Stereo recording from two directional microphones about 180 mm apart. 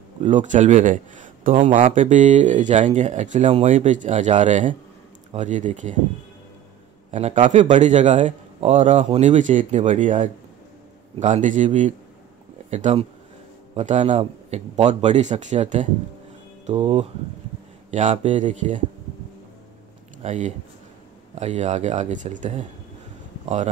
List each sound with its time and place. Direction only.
0.2 s a man's voice: 40° right (ahead or behind)
7.1 s a man's voice: 40° right (ahead or behind)
20.2 s a man's voice: 40° right (ahead or behind)